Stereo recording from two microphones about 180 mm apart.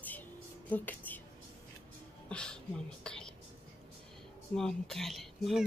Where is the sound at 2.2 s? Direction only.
5° left (ahead or behind).